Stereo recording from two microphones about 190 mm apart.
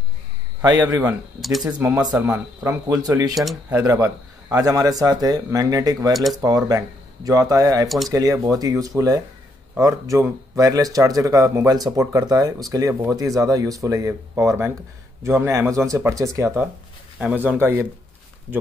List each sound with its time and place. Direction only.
0.6 s a man's voice: 20° right (ahead or behind)
3.3 s speech: centre (ahead or behind)
3.8 s a man's voice: 15° right (ahead or behind)